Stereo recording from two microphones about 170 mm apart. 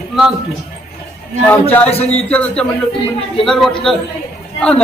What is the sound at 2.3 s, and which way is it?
A man's voice, 10° left (ahead or behind).